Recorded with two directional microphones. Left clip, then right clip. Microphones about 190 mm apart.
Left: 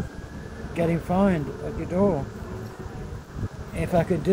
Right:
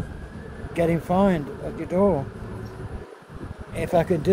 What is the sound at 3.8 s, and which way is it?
Speech, 15° right (ahead or behind).